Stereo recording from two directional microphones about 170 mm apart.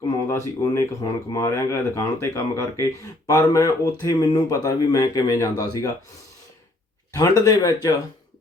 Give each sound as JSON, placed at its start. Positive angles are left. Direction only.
{"t": 0.3, "sound": "speech", "side_deg": 15}
{"t": 7.1, "sound": "speech", "side_deg": 20}